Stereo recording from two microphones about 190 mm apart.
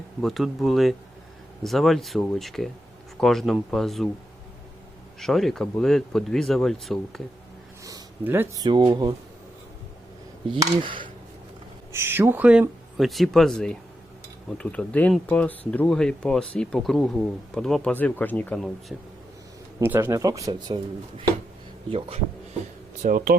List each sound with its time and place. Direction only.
0.2 s speech: centre (ahead or behind)
5.2 s speech: centre (ahead or behind)
7.9 s speech: 15° right (ahead or behind)
10.5 s speech: 25° right (ahead or behind)
11.9 s speech: 15° right (ahead or behind); by 18.9 s 5° left (ahead or behind)
19.8 s speech: 10° right (ahead or behind)
21.8 s speech: 30° right (ahead or behind)
23.0 s speech: 50° right (ahead or behind)